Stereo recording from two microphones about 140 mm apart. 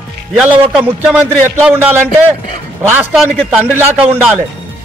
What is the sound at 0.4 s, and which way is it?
A man's voice, 5° right (ahead or behind).